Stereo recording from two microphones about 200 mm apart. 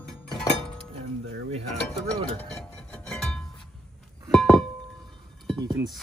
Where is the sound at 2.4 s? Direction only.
5° left (ahead or behind).